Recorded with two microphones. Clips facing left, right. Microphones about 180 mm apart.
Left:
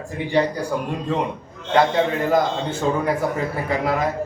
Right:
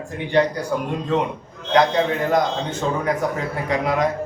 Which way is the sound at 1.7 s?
5° left (ahead or behind).